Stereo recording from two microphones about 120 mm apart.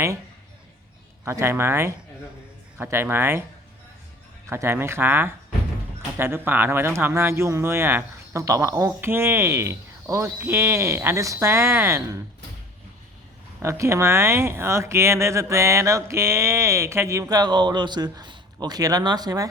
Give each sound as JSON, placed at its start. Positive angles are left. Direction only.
{"t": 1.2, "sound": "speech", "side_deg": -20}
{"t": 4.4, "sound": "speech", "side_deg": -20}
{"t": 13.6, "sound": "speech", "side_deg": -25}